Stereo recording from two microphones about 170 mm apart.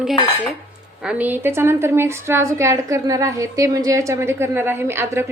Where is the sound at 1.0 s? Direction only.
10° right (ahead or behind).